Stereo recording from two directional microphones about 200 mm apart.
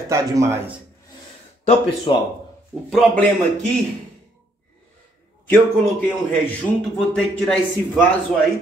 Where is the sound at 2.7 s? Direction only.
Centre (ahead or behind).